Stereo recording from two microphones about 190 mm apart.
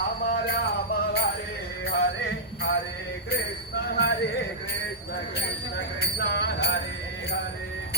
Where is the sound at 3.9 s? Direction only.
60° left (ahead or behind).